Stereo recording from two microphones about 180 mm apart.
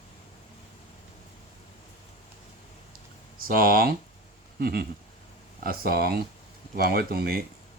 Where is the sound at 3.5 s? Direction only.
55° right (ahead or behind).